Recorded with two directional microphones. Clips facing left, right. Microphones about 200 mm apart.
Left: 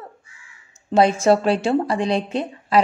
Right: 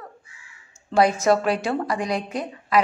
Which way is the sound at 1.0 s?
25° left (ahead or behind).